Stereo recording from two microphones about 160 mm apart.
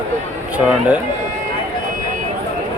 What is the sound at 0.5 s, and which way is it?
Speech, 10° right (ahead or behind).